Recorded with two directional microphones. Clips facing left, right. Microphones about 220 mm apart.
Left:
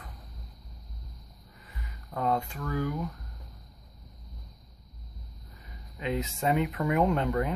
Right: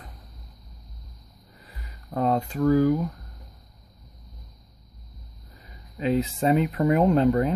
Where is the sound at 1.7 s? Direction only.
35° right (ahead or behind).